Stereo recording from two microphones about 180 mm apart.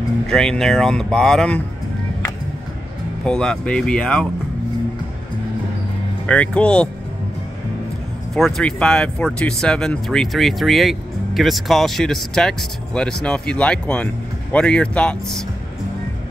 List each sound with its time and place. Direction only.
0.3 s speech: 5° left (ahead or behind)
3.3 s speech: 5° left (ahead or behind)
6.2 s speech: 5° left (ahead or behind)
8.4 s speech: centre (ahead or behind)